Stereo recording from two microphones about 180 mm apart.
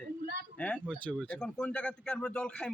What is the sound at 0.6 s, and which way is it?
A man's voice, 5° left (ahead or behind).